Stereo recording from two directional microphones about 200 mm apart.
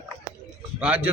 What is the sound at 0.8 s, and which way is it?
Speech, 5° right (ahead or behind).